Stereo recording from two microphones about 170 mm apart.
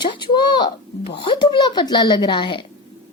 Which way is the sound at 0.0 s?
25° left (ahead or behind).